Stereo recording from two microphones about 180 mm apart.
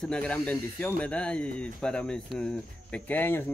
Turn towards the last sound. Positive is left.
turn(degrees=10)  # may be behind; listen again after turning